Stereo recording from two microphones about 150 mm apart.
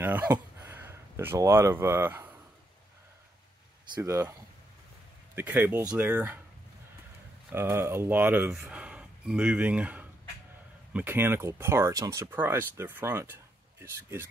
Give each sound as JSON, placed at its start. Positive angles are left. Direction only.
{"t": 0.0, "sound": "speech", "side_deg": -10}
{"t": 3.9, "sound": "speech", "side_deg": -15}
{"t": 7.5, "sound": "speech", "side_deg": -15}